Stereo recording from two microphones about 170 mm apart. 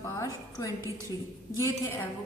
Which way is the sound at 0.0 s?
20° left (ahead or behind).